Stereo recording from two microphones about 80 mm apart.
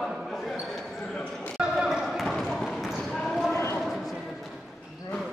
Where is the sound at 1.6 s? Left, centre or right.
Centre.